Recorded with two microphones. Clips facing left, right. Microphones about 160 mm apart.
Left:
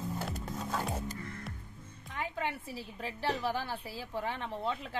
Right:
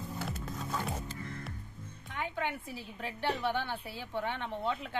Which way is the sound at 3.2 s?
35° left (ahead or behind).